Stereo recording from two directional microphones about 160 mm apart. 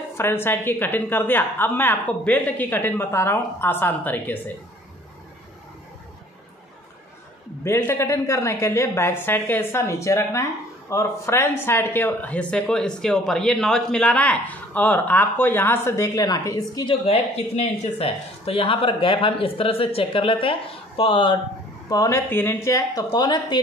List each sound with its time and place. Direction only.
0.2 s a woman's voice: 15° left (ahead or behind)
7.6 s a woman's voice: 15° left (ahead or behind)
17.1 s speech: 40° left (ahead or behind)
21.8 s speech: 20° left (ahead or behind)